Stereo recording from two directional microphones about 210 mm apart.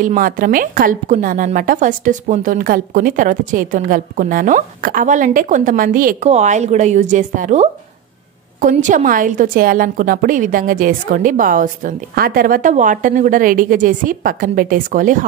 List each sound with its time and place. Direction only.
0.0 s a woman's voice: 40° right (ahead or behind)